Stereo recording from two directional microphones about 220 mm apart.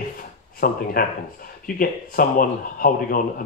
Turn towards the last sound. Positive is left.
turn(degrees=40)  # may be behind; listen again after turning